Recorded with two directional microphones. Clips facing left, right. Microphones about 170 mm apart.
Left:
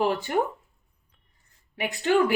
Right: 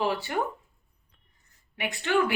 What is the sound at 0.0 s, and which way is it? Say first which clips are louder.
Speech: left 3 dB; 50° left (ahead or behind).